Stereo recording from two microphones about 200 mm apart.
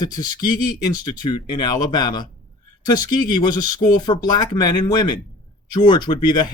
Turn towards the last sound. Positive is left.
turn(degrees=20)  # may be behind; listen again after turning